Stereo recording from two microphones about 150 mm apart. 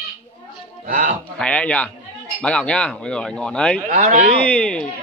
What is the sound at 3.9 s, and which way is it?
Speech, 55° right (ahead or behind).